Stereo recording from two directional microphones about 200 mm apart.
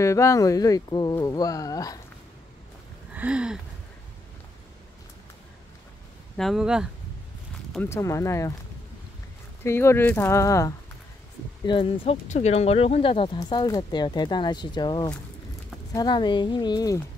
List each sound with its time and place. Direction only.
0.0 s speech: 15° left (ahead or behind)
3.2 s a sound: 5° right (ahead or behind)
6.3 s speech: centre (ahead or behind)
7.7 s speech: 10° left (ahead or behind)
9.6 s speech: 10° left (ahead or behind)